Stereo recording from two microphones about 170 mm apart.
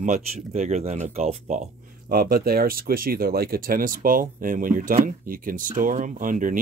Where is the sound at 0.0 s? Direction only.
45° right (ahead or behind).